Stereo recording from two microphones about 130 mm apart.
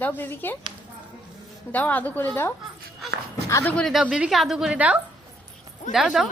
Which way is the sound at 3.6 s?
Centre (ahead or behind).